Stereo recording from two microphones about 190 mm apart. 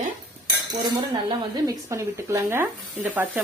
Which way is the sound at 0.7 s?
25° right (ahead or behind).